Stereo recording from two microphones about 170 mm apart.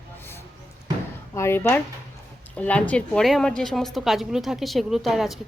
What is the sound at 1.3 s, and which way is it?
Speech, 15° left (ahead or behind).